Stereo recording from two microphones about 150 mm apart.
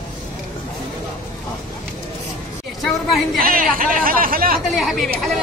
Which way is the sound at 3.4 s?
70° right (ahead or behind).